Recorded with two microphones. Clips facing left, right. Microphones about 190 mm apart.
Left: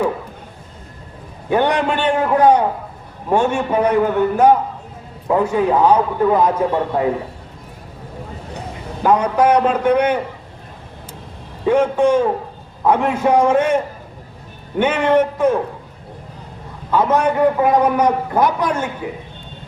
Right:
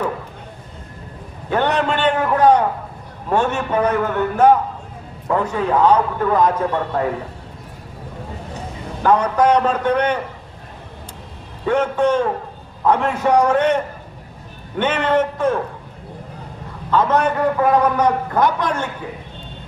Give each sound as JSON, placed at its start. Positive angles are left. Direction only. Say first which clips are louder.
{"t": 1.5, "sound": "a man's voice", "louder": "left 2 dB", "side_deg": 15}
{"t": 9.0, "sound": "a man's voice", "louder": "left 1 dB", "side_deg": 10}
{"t": 11.6, "sound": "a man's voice", "louder": "left 3 dB", "side_deg": 10}
{"t": 14.8, "sound": "a man's voice", "louder": "left 3 dB", "side_deg": 10}
{"t": 16.9, "sound": "a man's voice", "louder": "left 1 dB", "side_deg": 10}